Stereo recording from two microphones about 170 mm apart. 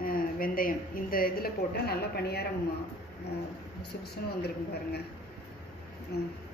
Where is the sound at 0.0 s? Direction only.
55° left (ahead or behind).